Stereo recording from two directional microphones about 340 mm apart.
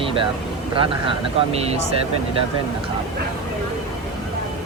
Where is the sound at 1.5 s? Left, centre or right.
Centre.